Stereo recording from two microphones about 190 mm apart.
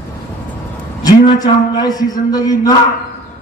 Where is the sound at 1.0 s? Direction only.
20° left (ahead or behind).